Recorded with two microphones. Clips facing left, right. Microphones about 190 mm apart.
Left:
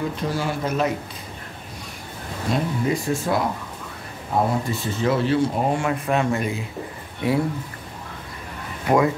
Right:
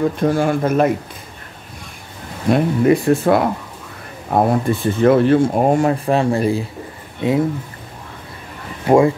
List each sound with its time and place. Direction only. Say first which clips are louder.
0.2 s speech: right 9 dB; 50° right (ahead or behind)
2.5 s speech: right 9 dB; 60° right (ahead or behind); by 6.6 s 35° right (ahead or behind)
7.2 s speech: right 5 dB; 20° right (ahead or behind)
8.8 s speech: right 6 dB; 30° right (ahead or behind)